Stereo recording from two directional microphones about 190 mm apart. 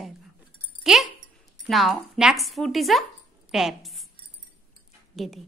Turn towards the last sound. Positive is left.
turn(degrees=0)  # may be behind; listen again after turning